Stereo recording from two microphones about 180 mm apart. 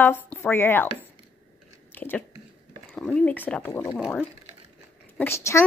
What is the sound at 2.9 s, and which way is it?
A woman's voice, 5° left (ahead or behind).